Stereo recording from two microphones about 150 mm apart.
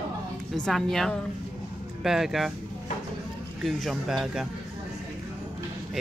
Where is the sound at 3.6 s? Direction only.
Centre (ahead or behind).